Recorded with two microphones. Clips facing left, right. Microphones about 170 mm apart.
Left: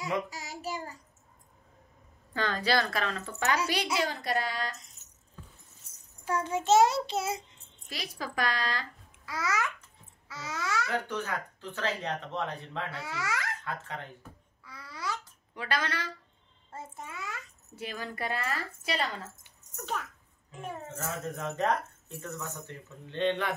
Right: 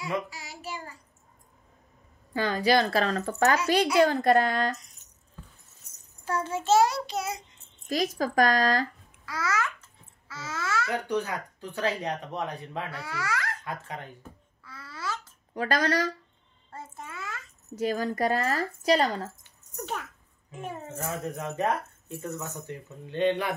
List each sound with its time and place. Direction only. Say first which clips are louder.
0.0 s child singing: right 1 dB; 40° left (ahead or behind)
2.3 s speech: right 5 dB; 10° right (ahead or behind)
2.9 s speech: right 7 dB; 35° right (ahead or behind)
6.2 s child singing: right 1 dB; 15° left (ahead or behind)
8.2 s speech: right 8 dB; 45° right (ahead or behind)
9.2 s babbling: right 2 dB; 20° left (ahead or behind)
10.9 s speech: right 4 dB; 15° right (ahead or behind)
12.9 s speech: right 2 dB; 20° left (ahead or behind)
13.7 s speech: right 1 dB; 15° right (ahead or behind)
14.6 s babbling: right 1 dB; 15° left (ahead or behind)
15.5 s a woman's voice: right 7 dB; 40° right (ahead or behind)
16.7 s a child's voice: right 1 dB; 15° left (ahead or behind)
17.7 s a woman's voice: right 10 dB; 40° right (ahead or behind)
19.7 s a child's voice: right 1 dB; 15° right (ahead or behind)